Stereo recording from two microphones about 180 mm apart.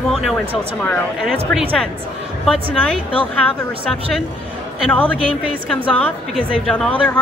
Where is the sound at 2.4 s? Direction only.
Centre (ahead or behind).